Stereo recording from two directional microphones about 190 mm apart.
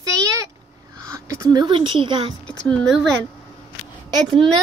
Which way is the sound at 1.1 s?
20° right (ahead or behind).